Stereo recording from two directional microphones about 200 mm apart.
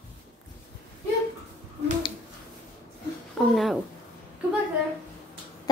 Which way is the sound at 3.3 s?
Centre (ahead or behind).